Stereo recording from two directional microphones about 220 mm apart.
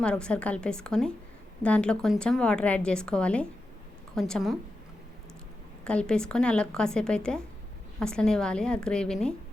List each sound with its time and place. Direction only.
0.0 s a woman's voice: 5° left (ahead or behind)
5.8 s a woman's voice: 5° left (ahead or behind)